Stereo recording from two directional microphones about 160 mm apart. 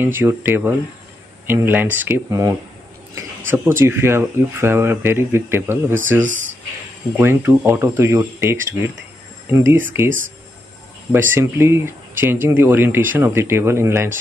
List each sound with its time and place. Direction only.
0.0 s speech: 15° right (ahead or behind)
5.9 s speech: 55° right (ahead or behind)
7.2 s speech: 15° right (ahead or behind)
11.1 s speech: 15° right (ahead or behind)